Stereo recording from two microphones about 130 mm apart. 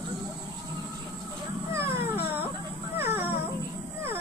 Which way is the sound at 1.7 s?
20° right (ahead or behind).